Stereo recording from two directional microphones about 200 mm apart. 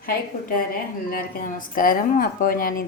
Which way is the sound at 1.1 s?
45° left (ahead or behind).